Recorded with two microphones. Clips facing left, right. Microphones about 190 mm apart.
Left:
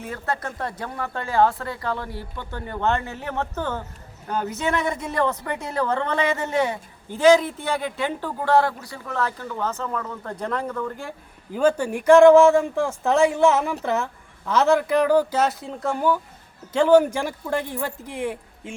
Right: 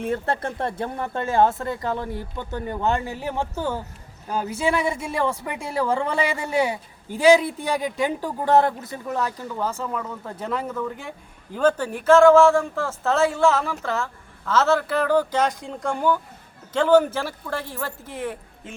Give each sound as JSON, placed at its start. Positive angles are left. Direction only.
{"t": 0.1, "sound": "speech", "side_deg": -25}
{"t": 11.5, "sound": "speech", "side_deg": 10}